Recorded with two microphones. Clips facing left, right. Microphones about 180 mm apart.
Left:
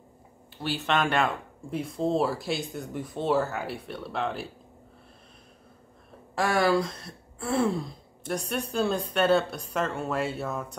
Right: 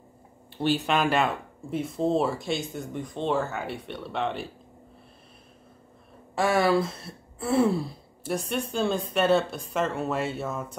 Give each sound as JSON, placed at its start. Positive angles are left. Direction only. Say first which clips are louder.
{"t": 0.6, "sound": "speech", "louder": "right 7 dB", "side_deg": -20}
{"t": 0.8, "sound": "speech", "louder": "left 3 dB", "side_deg": -5}
{"t": 6.3, "sound": "speech", "louder": "right 1 dB", "side_deg": 0}
{"t": 7.3, "sound": "throat clearing", "louder": "right 4 dB", "side_deg": 0}
{"t": 8.3, "sound": "speech", "louder": "right 2 dB", "side_deg": 0}